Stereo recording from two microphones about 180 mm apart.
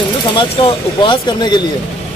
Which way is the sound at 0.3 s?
30° left (ahead or behind).